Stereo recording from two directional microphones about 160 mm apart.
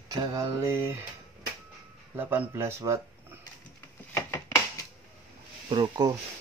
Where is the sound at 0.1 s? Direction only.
25° right (ahead or behind).